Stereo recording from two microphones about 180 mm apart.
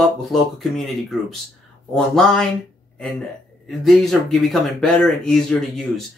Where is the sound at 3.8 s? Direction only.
Centre (ahead or behind).